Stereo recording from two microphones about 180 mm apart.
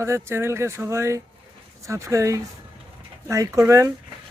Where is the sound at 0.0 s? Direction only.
15° right (ahead or behind).